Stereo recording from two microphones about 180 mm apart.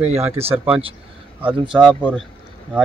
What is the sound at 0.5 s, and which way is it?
Speech, 10° right (ahead or behind).